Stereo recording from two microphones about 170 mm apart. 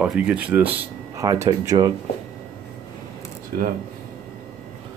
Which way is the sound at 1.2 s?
20° right (ahead or behind).